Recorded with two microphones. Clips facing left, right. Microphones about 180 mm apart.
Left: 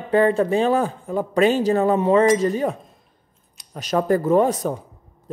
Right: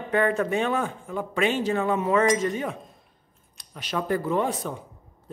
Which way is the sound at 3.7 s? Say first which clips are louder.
Left 7 dB; 45° left (ahead or behind).